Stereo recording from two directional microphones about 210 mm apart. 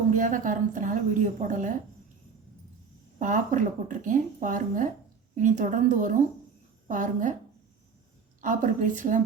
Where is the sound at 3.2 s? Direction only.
40° right (ahead or behind).